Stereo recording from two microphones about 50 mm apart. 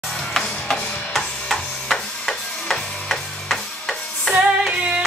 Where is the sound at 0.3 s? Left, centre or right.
Centre.